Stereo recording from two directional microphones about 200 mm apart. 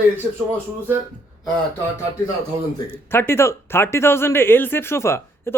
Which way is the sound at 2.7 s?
10° left (ahead or behind).